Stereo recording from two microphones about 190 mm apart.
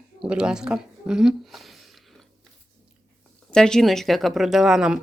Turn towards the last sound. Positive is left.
turn(degrees=-5)  # may be behind; listen again after turning